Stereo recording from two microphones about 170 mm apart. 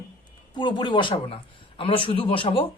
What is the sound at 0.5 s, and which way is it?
A woman's voice, 25° left (ahead or behind).